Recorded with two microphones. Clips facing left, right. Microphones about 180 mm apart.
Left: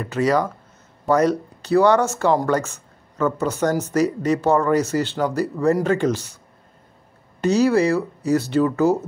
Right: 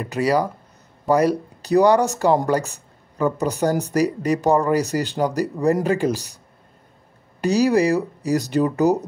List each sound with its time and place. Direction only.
0.0 s speech: 10° right (ahead or behind)
2.5 s speech: 35° right (ahead or behind)
3.2 s speech: 15° right (ahead or behind)
6.1 s speech: 35° right (ahead or behind)
7.4 s speech: 15° right (ahead or behind)